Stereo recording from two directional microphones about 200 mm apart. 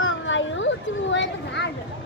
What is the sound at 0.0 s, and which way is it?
Children playing, 70° left (ahead or behind).